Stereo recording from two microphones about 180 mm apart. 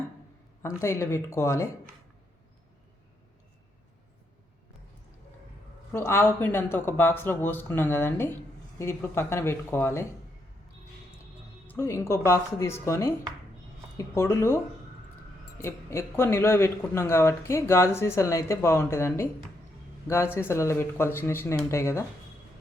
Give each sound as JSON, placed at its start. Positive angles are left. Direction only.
{"t": 0.6, "sound": "speech", "side_deg": 15}
{"t": 5.9, "sound": "speech", "side_deg": 15}
{"t": 11.6, "sound": "speech", "side_deg": 10}
{"t": 15.6, "sound": "speech", "side_deg": 15}